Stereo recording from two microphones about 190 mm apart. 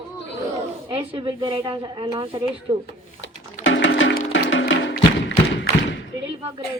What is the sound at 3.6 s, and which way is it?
Music, 75° left (ahead or behind).